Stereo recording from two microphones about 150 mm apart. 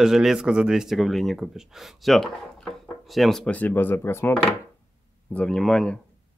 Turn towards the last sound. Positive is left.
turn(degrees=5)  # may be behind; listen again after turning